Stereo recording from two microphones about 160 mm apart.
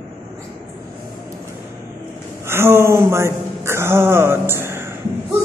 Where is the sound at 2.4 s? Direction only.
15° right (ahead or behind).